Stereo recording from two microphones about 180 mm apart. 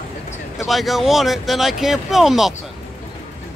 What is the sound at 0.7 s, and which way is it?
Speech, centre (ahead or behind).